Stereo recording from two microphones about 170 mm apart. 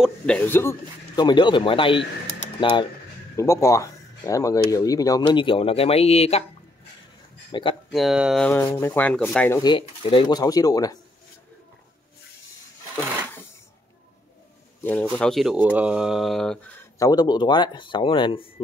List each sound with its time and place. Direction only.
0.5 s speech: 15° left (ahead or behind)
1.1 s speech: 25° left (ahead or behind)
3.3 s speech: 15° left (ahead or behind); by 6.4 s 35° left (ahead or behind)
7.5 s speech: 25° left (ahead or behind)
7.9 s speech: centre (ahead or behind)
8.5 s speech: 15° left (ahead or behind)
9.6 s speech: 30° left (ahead or behind)
14.8 s speech: 10° left (ahead or behind)
15.5 s speech: 10° right (ahead or behind)
17.0 s speech: 25° left (ahead or behind)